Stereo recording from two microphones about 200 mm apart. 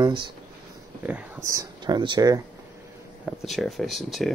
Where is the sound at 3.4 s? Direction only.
Centre (ahead or behind).